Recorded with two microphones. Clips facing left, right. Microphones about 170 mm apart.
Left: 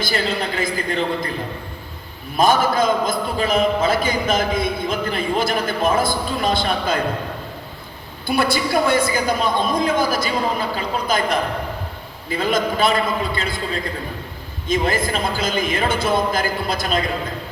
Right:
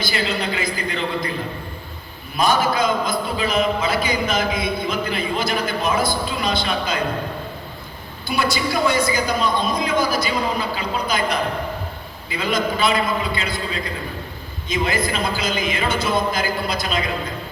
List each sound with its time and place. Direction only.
0.0 s a man's voice: 45° left (ahead or behind)
2.3 s a man's voice: 50° left (ahead or behind)
8.3 s a man's voice: 55° left (ahead or behind)
14.7 s a man's voice: 50° left (ahead or behind)